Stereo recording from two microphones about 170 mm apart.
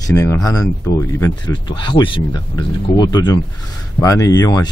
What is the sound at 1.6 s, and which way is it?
Speech, 25° left (ahead or behind).